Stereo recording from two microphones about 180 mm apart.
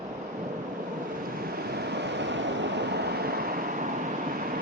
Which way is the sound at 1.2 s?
55° right (ahead or behind).